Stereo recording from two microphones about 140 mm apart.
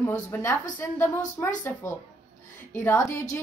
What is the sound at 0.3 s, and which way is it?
A woman's voice, 20° left (ahead or behind).